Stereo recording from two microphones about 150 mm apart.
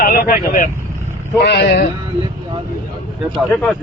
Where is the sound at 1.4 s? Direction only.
90° left.